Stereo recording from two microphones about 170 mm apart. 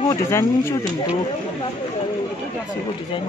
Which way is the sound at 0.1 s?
15° left (ahead or behind).